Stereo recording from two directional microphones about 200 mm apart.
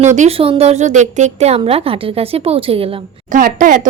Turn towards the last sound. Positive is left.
turn(degrees=-40)  # may be behind; listen again after turning